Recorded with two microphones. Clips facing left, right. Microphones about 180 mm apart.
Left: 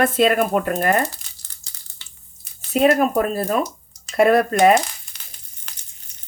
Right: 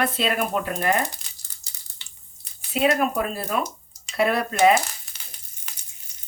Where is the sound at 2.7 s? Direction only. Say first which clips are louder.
Left 5 dB; 45° left (ahead or behind).